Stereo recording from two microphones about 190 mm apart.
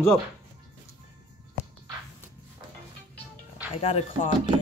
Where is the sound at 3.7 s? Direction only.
30° left (ahead or behind).